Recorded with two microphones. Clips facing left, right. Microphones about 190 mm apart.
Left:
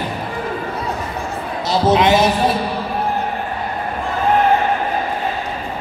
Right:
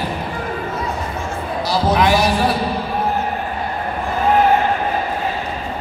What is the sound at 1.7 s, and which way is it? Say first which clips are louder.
Speech: left 2 dB; 25° left (ahead or behind).